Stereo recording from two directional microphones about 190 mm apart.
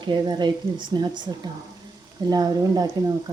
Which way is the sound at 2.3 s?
20° right (ahead or behind).